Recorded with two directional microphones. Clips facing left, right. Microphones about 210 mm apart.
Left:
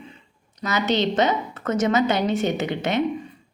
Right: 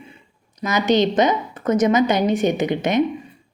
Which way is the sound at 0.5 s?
15° right (ahead or behind).